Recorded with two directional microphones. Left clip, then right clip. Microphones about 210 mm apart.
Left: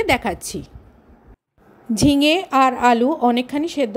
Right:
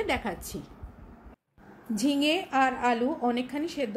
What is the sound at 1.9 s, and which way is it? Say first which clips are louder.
A woman's voice: left 10 dB; 40° left (ahead or behind).